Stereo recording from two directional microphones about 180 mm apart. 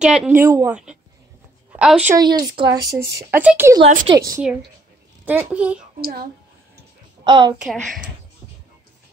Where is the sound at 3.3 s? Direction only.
10° right (ahead or behind).